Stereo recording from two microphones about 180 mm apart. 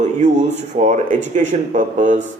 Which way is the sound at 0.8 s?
40° right (ahead or behind).